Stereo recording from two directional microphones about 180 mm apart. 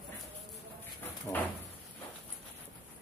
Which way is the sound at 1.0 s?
10° left (ahead or behind).